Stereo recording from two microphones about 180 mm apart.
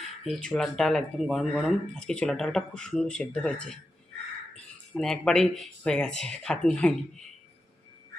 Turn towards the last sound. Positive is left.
turn(degrees=5)  # may be behind; listen again after turning